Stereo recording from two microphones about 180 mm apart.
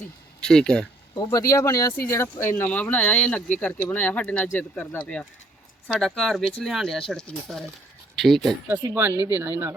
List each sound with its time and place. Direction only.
0.4 s speech: 5° left (ahead or behind)
1.1 s speech: 20° left (ahead or behind); by 8.5 s centre (ahead or behind)
8.6 s speech: 10° right (ahead or behind)